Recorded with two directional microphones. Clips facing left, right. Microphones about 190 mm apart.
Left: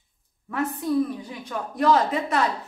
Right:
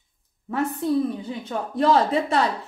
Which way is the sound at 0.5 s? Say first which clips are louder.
Right 2 dB; 25° right (ahead or behind).